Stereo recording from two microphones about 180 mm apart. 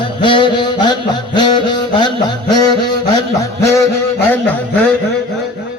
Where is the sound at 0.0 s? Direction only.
30° left (ahead or behind).